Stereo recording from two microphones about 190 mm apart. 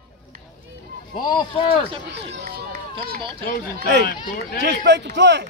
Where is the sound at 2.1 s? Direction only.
60° right (ahead or behind).